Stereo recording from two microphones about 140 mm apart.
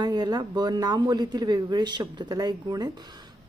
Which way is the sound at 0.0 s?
30° right (ahead or behind).